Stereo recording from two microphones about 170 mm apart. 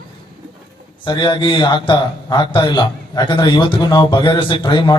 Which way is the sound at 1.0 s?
25° left (ahead or behind).